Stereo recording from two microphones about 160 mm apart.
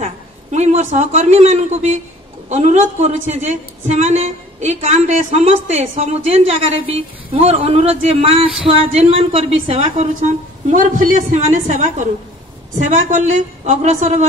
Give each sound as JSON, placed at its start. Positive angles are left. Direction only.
{"t": 0.0, "sound": "a man's voice", "side_deg": -45}